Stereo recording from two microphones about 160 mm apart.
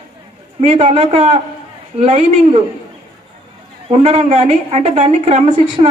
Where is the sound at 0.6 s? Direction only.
45° right (ahead or behind).